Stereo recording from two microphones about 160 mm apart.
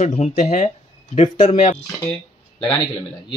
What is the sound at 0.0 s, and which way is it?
Speech, 45° left (ahead or behind).